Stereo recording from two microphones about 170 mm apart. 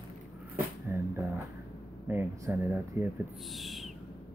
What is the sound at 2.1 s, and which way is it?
Speech, 15° right (ahead or behind).